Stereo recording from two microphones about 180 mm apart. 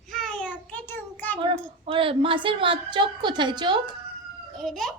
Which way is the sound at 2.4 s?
30° right (ahead or behind).